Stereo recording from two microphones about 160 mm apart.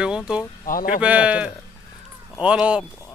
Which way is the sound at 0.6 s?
60° left (ahead or behind).